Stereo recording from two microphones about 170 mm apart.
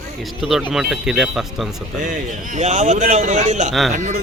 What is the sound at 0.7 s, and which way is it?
Speech, 5° right (ahead or behind).